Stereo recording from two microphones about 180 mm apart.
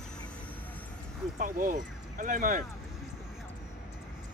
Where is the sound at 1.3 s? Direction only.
45° right (ahead or behind).